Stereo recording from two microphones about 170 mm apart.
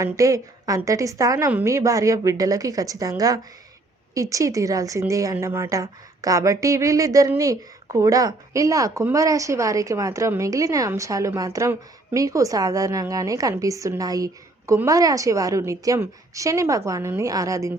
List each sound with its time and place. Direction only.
0.0 s speech: 20° right (ahead or behind)